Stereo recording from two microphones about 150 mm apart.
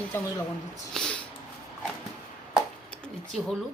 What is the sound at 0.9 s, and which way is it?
Speech, 5° left (ahead or behind).